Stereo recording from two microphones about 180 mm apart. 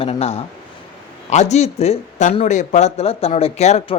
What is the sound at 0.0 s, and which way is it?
Speech, 35° left (ahead or behind).